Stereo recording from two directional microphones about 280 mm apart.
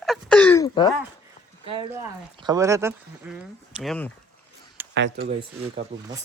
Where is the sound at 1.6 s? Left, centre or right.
Centre.